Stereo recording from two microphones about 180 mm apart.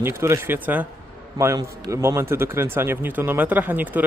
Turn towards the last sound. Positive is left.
turn(degrees=-10)  # may be behind; listen again after turning